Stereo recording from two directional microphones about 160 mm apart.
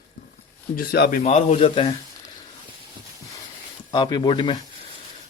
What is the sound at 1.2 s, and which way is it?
Speech, 45° left (ahead or behind).